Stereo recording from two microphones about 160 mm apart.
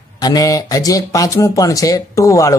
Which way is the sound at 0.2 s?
25° left (ahead or behind).